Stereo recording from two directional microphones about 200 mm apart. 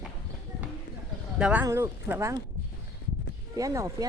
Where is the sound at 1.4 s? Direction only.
5° right (ahead or behind).